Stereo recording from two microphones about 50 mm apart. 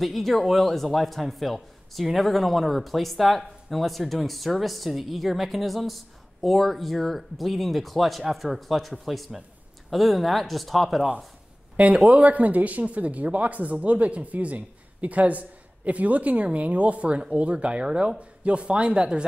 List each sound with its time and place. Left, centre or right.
0.0 s a man's voice: centre
11.7 s speech: right